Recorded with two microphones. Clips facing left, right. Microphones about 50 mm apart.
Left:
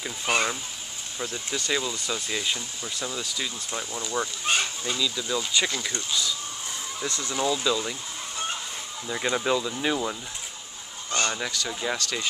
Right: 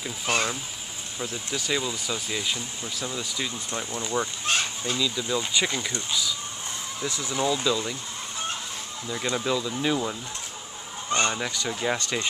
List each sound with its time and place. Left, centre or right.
0.0 s speech: centre
3.1 s speech: centre
4.5 s speech: centre
4.9 s speech: centre
7.1 s speech: centre
9.0 s speech: centre
11.1 s speech: right